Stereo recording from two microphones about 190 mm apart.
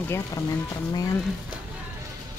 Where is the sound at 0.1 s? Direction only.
15° left (ahead or behind).